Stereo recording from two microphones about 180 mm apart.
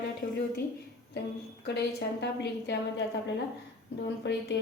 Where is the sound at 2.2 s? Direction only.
70° left (ahead or behind).